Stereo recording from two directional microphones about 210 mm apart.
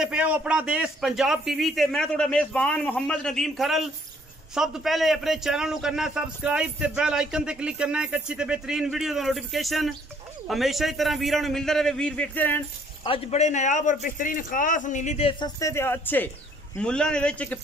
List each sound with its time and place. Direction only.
0.0 s a man's voice: 5° right (ahead or behind)
13.0 s a man's voice: 25° left (ahead or behind); by 17.6 s 5° left (ahead or behind)